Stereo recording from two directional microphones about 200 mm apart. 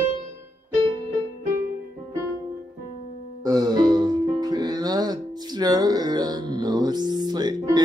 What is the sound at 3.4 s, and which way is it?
Music, 20° right (ahead or behind).